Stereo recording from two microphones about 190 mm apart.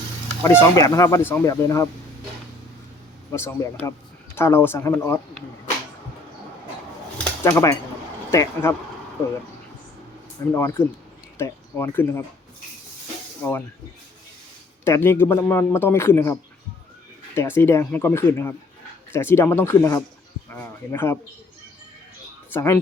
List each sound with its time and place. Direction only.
0.4 s speech: 15° left (ahead or behind)
3.3 s speech: 10° left (ahead or behind)
7.4 s speech: 15° left (ahead or behind)
10.5 s speech: 10° left (ahead or behind)
13.4 s speech: 15° left (ahead or behind)
14.8 s speech: 15° left (ahead or behind)
22.5 s speech: 15° left (ahead or behind)